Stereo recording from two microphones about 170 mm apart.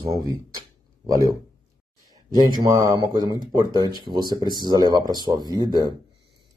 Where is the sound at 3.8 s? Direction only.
25° left (ahead or behind).